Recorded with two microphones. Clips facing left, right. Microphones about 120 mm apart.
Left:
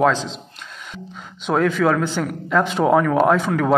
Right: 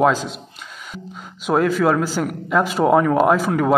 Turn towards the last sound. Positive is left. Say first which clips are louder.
# right 1 dB
turn(degrees=-5)  # may be behind; listen again after turning